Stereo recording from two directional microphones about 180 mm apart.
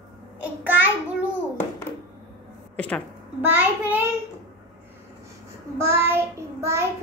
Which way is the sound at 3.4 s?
10° right (ahead or behind).